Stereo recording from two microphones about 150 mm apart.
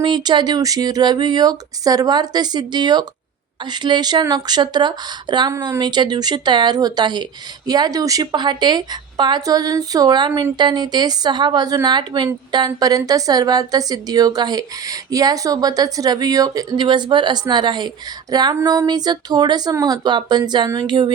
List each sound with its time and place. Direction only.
0.0 s a woman's voice: 30° right (ahead or behind)